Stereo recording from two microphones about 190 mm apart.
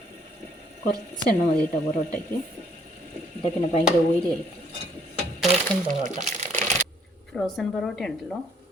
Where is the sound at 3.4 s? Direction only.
35° left (ahead or behind).